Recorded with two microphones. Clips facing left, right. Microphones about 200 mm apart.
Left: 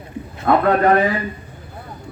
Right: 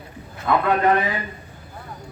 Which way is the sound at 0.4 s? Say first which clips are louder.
Left 4 dB; 45° left (ahead or behind).